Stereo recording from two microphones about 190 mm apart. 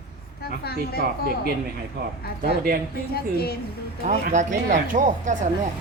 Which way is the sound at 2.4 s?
50° right (ahead or behind).